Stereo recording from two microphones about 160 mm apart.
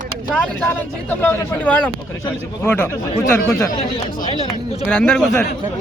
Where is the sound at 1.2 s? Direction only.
15° left (ahead or behind).